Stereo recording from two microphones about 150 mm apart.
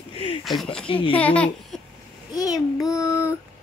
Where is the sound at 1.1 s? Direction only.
10° left (ahead or behind).